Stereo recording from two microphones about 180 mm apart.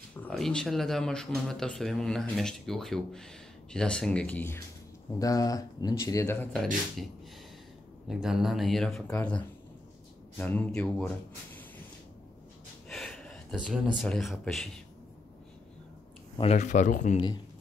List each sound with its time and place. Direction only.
0.2 s speech: 5° left (ahead or behind)
8.1 s speech: 5° right (ahead or behind)
12.8 s a sound: centre (ahead or behind)
14.0 s speech: centre (ahead or behind)
16.3 s speech: 40° left (ahead or behind)